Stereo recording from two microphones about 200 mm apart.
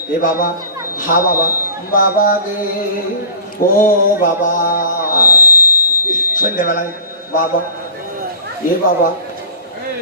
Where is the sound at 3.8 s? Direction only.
40° left (ahead or behind).